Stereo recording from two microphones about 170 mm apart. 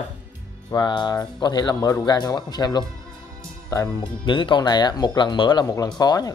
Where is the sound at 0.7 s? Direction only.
25° left (ahead or behind).